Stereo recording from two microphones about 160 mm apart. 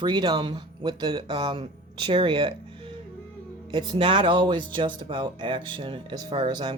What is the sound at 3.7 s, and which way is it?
Speech, 30° right (ahead or behind).